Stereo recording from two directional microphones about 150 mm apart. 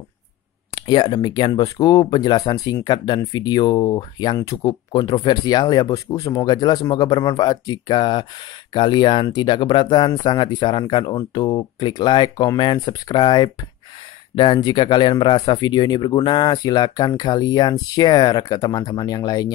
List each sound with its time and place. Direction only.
0.7 s speech: 30° left (ahead or behind)